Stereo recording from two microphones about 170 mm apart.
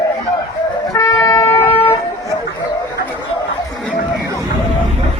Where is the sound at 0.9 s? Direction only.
20° left (ahead or behind).